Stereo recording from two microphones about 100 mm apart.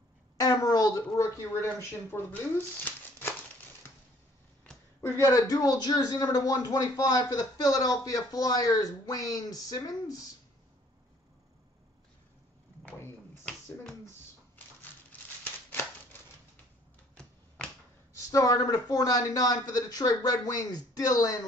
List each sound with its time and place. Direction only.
0.4 s a sound: 40° left (ahead or behind); by 3.3 s 20° left (ahead or behind)
5.0 s a man's voice: 25° left (ahead or behind)
5.5 s speech: 40° left (ahead or behind)
15.7 s typewriter: 20° left (ahead or behind)
17.1 s finger snapping: 10° left (ahead or behind)
18.3 s speech: 35° left (ahead or behind)